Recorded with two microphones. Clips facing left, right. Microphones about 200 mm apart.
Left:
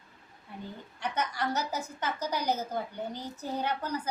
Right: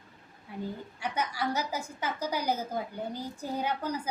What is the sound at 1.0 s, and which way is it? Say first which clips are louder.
A woman's voice: left 1 dB; 10° right (ahead or behind).